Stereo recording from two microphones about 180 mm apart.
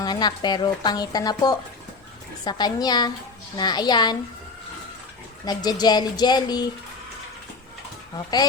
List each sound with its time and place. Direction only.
0.0 s a woman's voice: 20° left (ahead or behind)
5.5 s a woman's voice: 20° left (ahead or behind)